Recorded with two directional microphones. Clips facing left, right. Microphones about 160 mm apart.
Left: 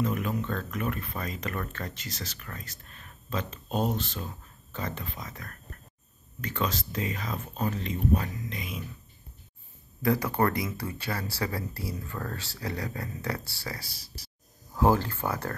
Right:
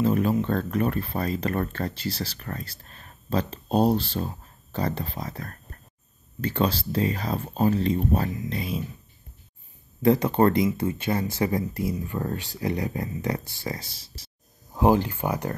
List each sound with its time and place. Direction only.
0.0 s a sound: 35° right (ahead or behind)
0.3 s speech: 35° right (ahead or behind)
10.0 s speech: 25° right (ahead or behind)